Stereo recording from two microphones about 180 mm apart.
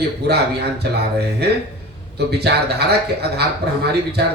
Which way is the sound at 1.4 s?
65° right (ahead or behind).